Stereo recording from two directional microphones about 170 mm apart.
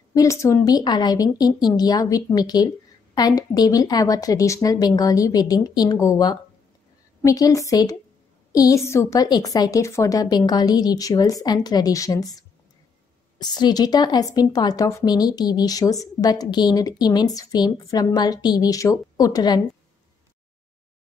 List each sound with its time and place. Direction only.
0.1 s speech: 20° left (ahead or behind)
13.4 s speech: 25° left (ahead or behind)